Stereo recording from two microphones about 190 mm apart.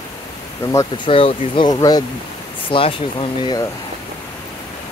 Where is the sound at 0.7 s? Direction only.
20° left (ahead or behind).